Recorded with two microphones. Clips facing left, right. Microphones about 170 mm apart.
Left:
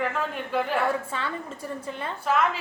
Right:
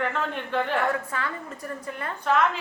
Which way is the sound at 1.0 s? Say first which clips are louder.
Even; 25° left (ahead or behind).